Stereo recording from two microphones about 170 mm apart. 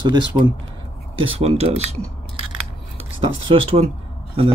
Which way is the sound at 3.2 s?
30° right (ahead or behind).